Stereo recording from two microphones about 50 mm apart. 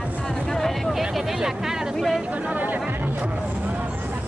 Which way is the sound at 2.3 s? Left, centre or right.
Right.